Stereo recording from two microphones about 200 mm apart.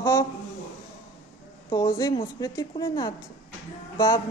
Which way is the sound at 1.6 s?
20° left (ahead or behind).